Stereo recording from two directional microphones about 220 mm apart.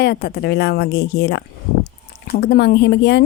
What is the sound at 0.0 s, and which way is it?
A woman's voice, 45° left (ahead or behind).